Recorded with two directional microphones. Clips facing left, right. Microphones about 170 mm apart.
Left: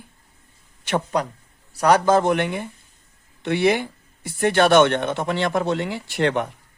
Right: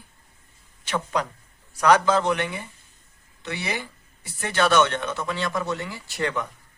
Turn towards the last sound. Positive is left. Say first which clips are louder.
# left 6 dB
turn(degrees=65)  # may be behind; listen again after turning